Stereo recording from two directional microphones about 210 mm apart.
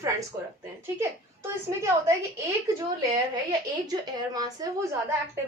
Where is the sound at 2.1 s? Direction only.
15° right (ahead or behind).